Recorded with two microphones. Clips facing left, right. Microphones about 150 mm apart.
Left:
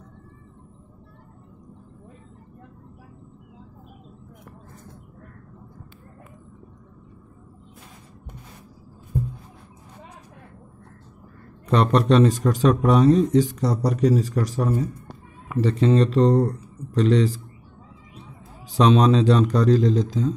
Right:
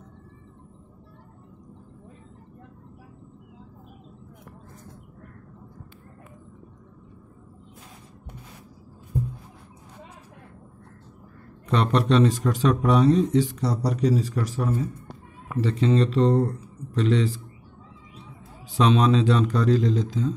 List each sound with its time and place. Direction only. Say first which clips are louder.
11.6 s speech: left 3 dB; 45° left (ahead or behind)
18.8 s speech: left 3 dB; 40° left (ahead or behind)